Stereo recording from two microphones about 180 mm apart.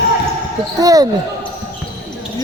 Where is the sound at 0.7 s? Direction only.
20° right (ahead or behind).